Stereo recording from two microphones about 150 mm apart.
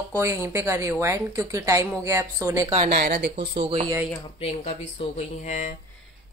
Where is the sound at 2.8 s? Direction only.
90° right.